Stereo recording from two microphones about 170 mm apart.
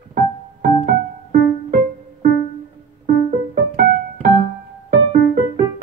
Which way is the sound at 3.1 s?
60° right (ahead or behind).